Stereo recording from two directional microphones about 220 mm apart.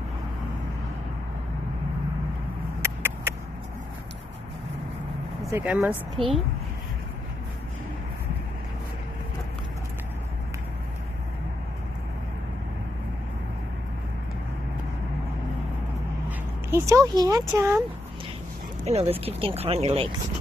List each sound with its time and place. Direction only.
2.8 s a sound: 10° right (ahead or behind)
5.5 s speech: 10° right (ahead or behind)
16.3 s speech: 10° right (ahead or behind)
18.9 s speech: 25° right (ahead or behind)